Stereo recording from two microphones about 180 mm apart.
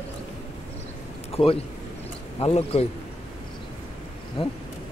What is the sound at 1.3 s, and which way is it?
A man's voice, 35° left (ahead or behind).